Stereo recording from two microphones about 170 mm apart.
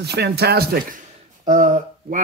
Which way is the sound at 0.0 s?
75° right (ahead or behind).